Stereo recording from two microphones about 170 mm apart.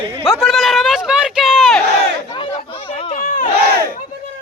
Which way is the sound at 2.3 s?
35° left (ahead or behind).